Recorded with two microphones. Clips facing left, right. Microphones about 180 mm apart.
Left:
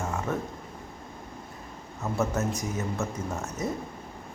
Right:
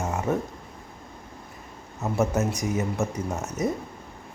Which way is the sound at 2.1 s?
15° right (ahead or behind).